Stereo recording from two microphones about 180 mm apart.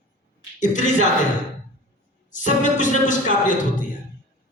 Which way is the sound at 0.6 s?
45° left (ahead or behind).